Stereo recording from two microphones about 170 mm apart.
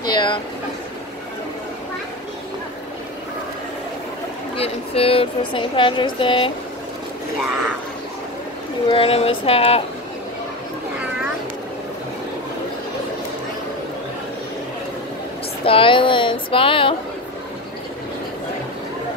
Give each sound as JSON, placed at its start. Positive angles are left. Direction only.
{"t": 0.0, "sound": "a sound", "side_deg": 25}
{"t": 4.6, "sound": "speech", "side_deg": 35}
{"t": 8.8, "sound": "speech", "side_deg": 30}
{"t": 15.6, "sound": "speech", "side_deg": 30}